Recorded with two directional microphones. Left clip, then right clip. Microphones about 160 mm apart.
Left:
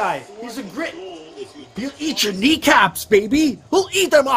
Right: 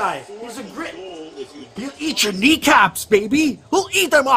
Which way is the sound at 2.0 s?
10° right (ahead or behind).